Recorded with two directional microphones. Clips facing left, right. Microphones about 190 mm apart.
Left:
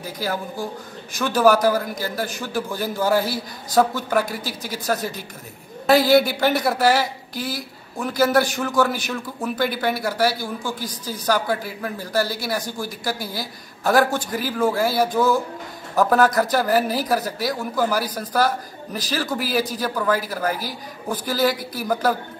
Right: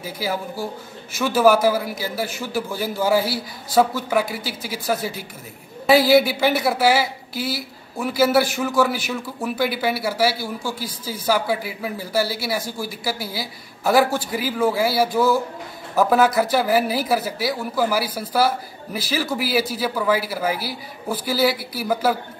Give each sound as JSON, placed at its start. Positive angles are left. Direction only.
{"t": 0.2, "sound": "speech", "side_deg": -5}